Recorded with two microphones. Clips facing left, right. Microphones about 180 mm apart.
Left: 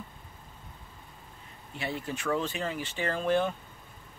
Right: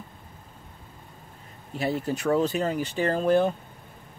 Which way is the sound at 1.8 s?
40° right (ahead or behind).